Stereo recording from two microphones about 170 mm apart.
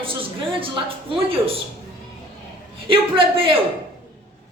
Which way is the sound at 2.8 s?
30° right (ahead or behind).